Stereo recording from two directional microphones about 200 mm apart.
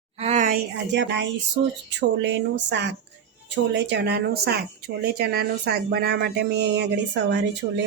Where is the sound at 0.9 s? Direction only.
60° right (ahead or behind).